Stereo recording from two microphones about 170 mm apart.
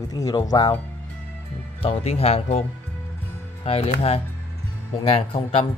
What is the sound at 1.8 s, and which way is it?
Speech, 35° left (ahead or behind).